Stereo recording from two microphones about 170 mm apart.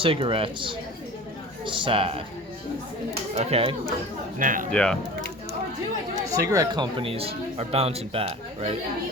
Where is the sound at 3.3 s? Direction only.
35° right (ahead or behind).